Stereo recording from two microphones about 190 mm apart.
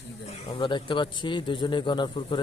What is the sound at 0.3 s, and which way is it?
A man's voice, 30° left (ahead or behind).